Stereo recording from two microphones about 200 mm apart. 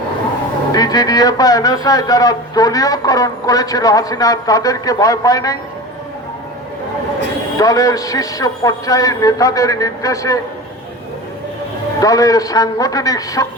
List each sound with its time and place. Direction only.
0.7 s a man's voice: 20° left (ahead or behind)
7.6 s speech: 15° left (ahead or behind)
11.9 s speech: 15° left (ahead or behind)